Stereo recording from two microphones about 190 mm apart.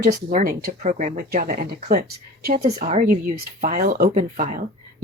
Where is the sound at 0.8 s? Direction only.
35° right (ahead or behind).